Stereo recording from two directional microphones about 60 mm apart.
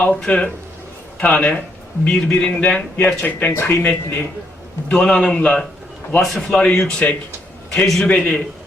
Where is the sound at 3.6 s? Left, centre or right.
Left.